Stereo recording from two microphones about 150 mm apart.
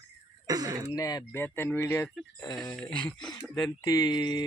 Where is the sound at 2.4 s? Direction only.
25° left (ahead or behind).